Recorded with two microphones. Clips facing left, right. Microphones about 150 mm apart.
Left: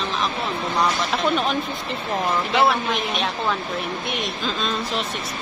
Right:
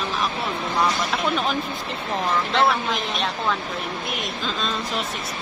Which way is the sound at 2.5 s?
5° left (ahead or behind).